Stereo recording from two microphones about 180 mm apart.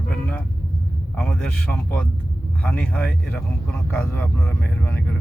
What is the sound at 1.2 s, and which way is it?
Speech, 5° left (ahead or behind).